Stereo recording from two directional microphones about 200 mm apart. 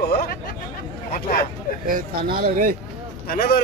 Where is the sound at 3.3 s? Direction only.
50° left (ahead or behind).